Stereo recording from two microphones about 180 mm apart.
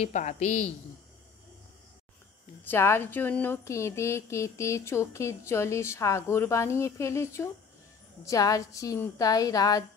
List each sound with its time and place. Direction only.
0.0 s speech: 40° left (ahead or behind)
2.6 s speech: 10° left (ahead or behind)
8.3 s a woman's voice: 20° left (ahead or behind)